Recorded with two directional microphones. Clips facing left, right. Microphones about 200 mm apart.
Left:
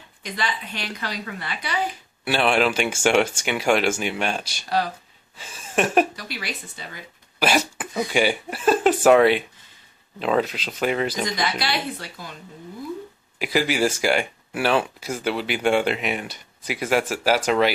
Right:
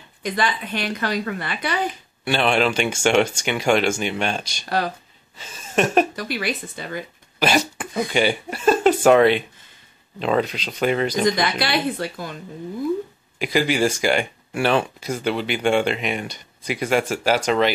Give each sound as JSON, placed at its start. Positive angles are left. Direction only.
{"t": 0.2, "sound": "a woman's voice", "side_deg": -55}
{"t": 2.2, "sound": "speech", "side_deg": 5}
{"t": 5.4, "sound": "a sound", "side_deg": 10}
{"t": 6.1, "sound": "a woman's voice", "side_deg": -55}
{"t": 7.3, "sound": "speech", "side_deg": 5}
{"t": 11.2, "sound": "a woman's voice", "side_deg": -50}
{"t": 13.4, "sound": "speech", "side_deg": 5}